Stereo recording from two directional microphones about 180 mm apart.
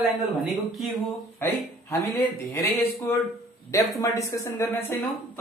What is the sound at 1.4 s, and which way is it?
A man's voice, 15° left (ahead or behind).